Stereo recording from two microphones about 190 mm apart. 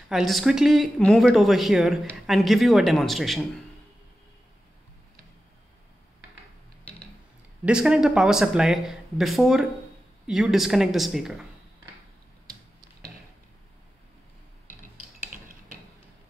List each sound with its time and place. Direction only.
0.1 s speech: centre (ahead or behind)
7.6 s speech: 5° right (ahead or behind)